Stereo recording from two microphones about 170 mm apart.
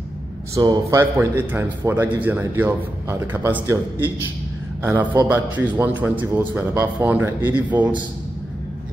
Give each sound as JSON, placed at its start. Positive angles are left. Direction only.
{"t": 0.6, "sound": "a man's voice", "side_deg": -20}